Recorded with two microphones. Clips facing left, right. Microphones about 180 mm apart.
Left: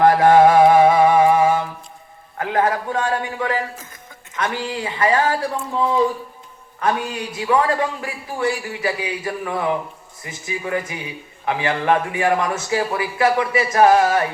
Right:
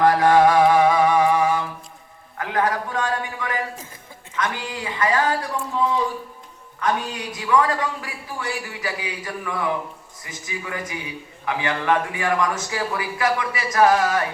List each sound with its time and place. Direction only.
0.0 s music: 25° left (ahead or behind)
2.4 s a sound: 25° left (ahead or behind)
4.4 s a man's voice: 30° left (ahead or behind)
7.3 s a man's voice: 30° left (ahead or behind)